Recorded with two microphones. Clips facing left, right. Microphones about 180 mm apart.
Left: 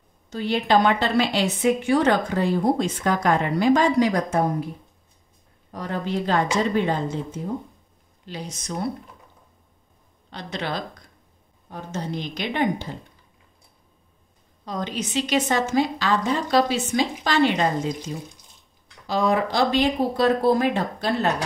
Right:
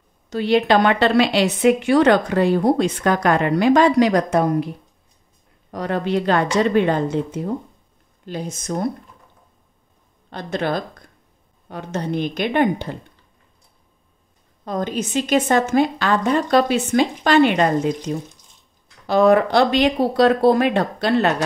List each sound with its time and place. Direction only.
0.3 s a woman's voice: 75° right (ahead or behind)
5.7 s a woman's voice: 70° right (ahead or behind)
8.3 s speech: 50° right (ahead or behind)
10.3 s speech: 50° right (ahead or behind)
11.7 s a woman's voice: 65° right (ahead or behind)
14.6 s a woman's voice: 50° right (ahead or behind); by 21.3 s 70° right (ahead or behind)